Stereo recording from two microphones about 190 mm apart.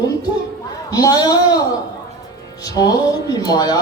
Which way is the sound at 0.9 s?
20° left (ahead or behind).